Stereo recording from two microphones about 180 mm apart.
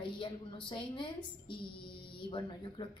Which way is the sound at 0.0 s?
30° left (ahead or behind).